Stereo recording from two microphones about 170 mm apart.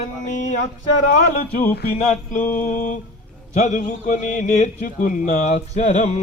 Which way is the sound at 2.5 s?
50° left (ahead or behind).